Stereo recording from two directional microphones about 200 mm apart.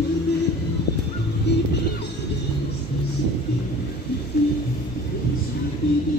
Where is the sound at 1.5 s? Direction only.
55° left (ahead or behind).